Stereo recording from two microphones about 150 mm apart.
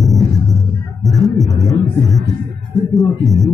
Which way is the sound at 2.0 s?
20° left (ahead or behind).